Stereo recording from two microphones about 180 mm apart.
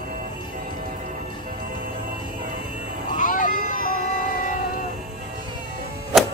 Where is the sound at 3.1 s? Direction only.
50° left (ahead or behind).